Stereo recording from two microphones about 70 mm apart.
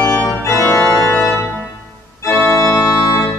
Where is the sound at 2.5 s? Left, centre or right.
Left.